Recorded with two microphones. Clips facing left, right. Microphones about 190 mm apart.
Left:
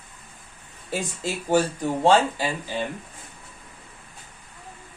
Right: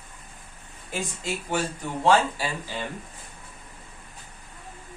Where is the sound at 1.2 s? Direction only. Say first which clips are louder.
Left 7 dB; 40° left (ahead or behind).